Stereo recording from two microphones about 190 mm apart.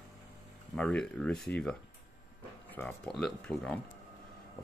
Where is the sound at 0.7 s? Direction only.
5° left (ahead or behind).